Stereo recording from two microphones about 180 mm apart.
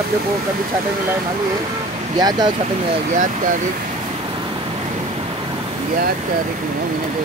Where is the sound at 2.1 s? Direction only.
20° right (ahead or behind).